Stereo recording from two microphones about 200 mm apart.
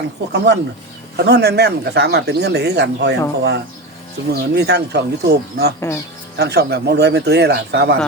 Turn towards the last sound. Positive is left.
turn(degrees=-55)  # may be behind; listen again after turning